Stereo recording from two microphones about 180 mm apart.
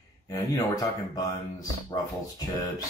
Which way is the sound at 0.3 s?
20° left (ahead or behind).